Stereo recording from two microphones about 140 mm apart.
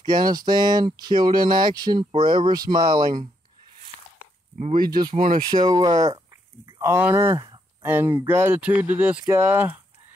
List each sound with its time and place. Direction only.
0.0 s speech: 30° right (ahead or behind)
4.6 s speech: 60° right (ahead or behind)
5.1 s speech: 70° right (ahead or behind)
5.5 s speech: 30° right (ahead or behind); by 9.8 s 15° right (ahead or behind)